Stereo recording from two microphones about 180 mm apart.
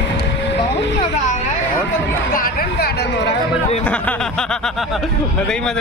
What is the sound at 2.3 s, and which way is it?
Speech, 55° left (ahead or behind).